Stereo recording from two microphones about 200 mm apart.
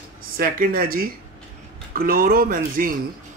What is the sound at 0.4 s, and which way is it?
Speech, 45° right (ahead or behind).